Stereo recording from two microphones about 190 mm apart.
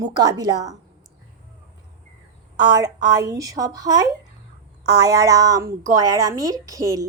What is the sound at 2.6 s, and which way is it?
A woman's voice, 20° right (ahead or behind).